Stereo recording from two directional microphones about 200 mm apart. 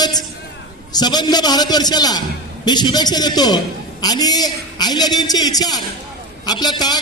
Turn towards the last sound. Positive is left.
turn(degrees=20)  # may be behind; listen again after turning